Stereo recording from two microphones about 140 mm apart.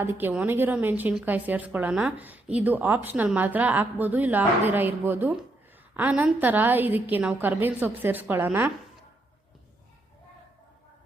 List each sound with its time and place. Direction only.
0.0 s a woman's voice: 15° right (ahead or behind)